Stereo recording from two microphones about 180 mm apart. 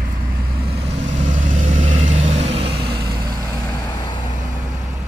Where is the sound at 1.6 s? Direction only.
40° right (ahead or behind).